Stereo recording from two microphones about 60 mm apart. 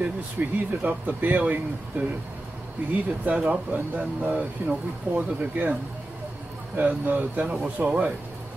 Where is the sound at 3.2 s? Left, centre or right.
Centre.